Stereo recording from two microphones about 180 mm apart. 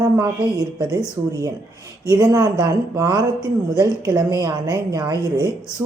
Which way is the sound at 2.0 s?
20° right (ahead or behind).